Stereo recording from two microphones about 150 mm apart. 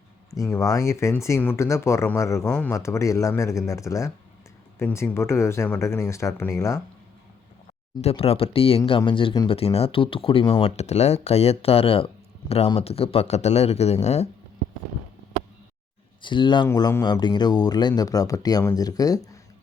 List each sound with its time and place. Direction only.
0.3 s speech: 20° left (ahead or behind)
8.0 s speech: 40° left (ahead or behind)
9.5 s speech: 40° left (ahead or behind)
16.2 s speech: 30° left (ahead or behind)